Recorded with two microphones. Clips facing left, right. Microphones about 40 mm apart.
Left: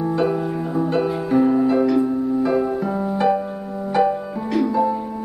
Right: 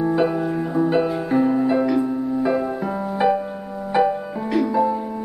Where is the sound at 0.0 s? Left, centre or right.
Centre.